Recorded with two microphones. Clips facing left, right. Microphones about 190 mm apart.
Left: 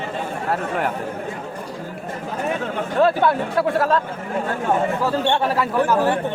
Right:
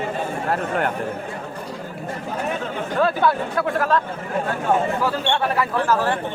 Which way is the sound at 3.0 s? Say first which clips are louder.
Left 2 dB; 25° left (ahead or behind).